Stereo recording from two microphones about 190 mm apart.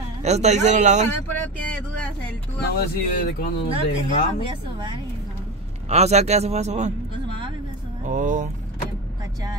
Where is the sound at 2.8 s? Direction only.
50° left (ahead or behind).